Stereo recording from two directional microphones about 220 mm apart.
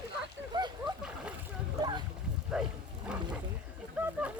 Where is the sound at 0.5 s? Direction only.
20° right (ahead or behind).